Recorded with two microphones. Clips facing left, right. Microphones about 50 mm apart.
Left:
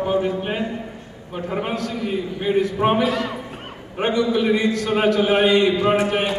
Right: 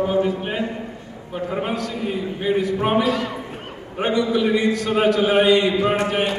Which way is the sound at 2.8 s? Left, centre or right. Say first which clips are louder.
Left 1 dB; centre.